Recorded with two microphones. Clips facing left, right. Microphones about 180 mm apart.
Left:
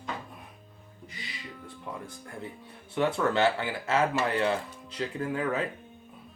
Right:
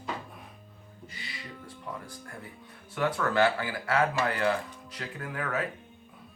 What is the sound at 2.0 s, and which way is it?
Speech, 25° left (ahead or behind).